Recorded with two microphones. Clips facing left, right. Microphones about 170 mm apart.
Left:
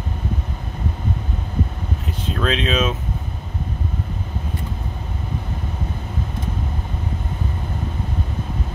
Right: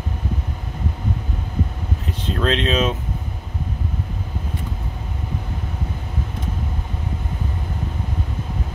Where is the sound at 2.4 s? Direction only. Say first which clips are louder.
Right 1 dB; 5° left (ahead or behind).